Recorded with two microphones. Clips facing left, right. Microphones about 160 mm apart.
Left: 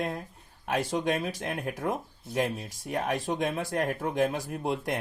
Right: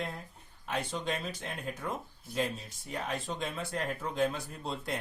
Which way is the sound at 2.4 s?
85° left.